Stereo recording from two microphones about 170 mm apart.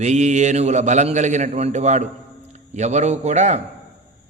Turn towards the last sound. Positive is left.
turn(degrees=-45)  # may be behind; listen again after turning